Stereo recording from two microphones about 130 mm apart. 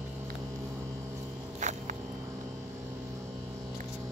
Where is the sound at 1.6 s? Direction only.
70° right (ahead or behind).